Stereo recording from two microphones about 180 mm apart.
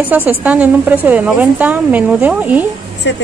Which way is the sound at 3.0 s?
85° left.